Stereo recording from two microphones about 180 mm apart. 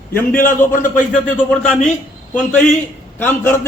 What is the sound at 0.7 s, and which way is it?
Speech, 45° left (ahead or behind).